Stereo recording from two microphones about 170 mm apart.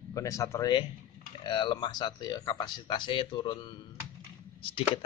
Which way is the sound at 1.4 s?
30° left (ahead or behind).